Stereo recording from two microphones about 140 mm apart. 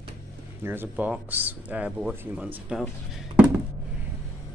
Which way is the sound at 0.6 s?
15° right (ahead or behind).